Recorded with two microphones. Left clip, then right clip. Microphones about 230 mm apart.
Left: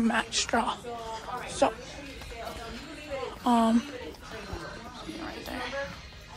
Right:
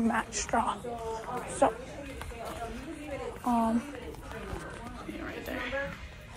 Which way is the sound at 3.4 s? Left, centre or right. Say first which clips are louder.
Left 4 dB; left.